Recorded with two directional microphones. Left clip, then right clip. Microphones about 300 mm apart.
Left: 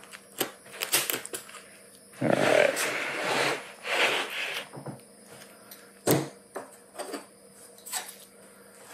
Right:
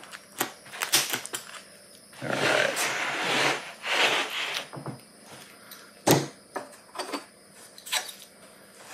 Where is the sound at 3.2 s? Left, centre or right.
Centre.